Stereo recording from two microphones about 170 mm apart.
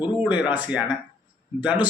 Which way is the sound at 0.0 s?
10° right (ahead or behind).